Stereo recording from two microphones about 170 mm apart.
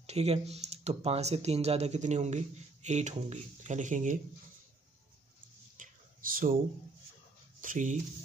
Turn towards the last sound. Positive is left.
turn(degrees=-50)  # may be behind; listen again after turning